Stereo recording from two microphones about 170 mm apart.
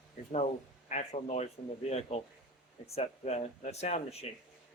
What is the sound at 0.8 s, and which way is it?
Speech, 45° left (ahead or behind).